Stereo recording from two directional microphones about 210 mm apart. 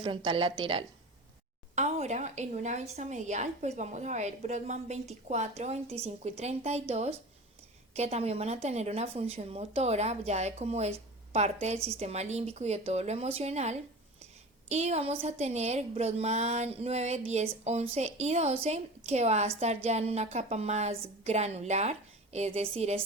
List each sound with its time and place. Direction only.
0.3 s a woman's voice: 25° right (ahead or behind)